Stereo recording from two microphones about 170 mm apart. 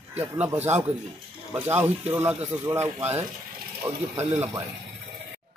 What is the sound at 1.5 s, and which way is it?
Speech, 15° right (ahead or behind).